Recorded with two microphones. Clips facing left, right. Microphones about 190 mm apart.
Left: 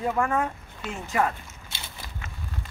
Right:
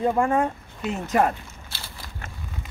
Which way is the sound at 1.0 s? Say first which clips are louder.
Right 4 dB; 45° right (ahead or behind).